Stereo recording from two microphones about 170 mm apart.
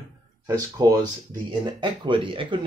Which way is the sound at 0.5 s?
20° right (ahead or behind).